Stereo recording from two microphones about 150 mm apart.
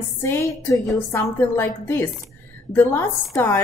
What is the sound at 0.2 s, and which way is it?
A woman's voice, 15° left (ahead or behind).